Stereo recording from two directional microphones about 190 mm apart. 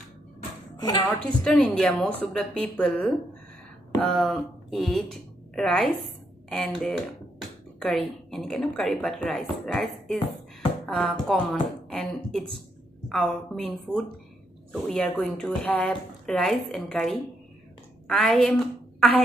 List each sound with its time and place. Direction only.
0.7 s speech: 20° left (ahead or behind)
1.2 s speech: 5° left (ahead or behind)
4.1 s a woman's voice: centre (ahead or behind)